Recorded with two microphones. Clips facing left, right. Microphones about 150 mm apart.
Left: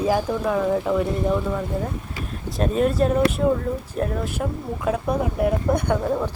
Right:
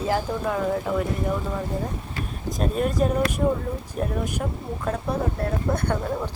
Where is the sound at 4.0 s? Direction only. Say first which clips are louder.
Left 2 dB; centre (ahead or behind).